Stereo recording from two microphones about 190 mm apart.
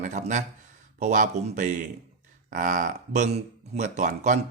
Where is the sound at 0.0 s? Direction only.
40° right (ahead or behind).